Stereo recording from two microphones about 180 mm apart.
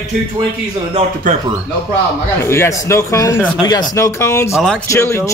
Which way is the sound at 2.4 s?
15° left (ahead or behind).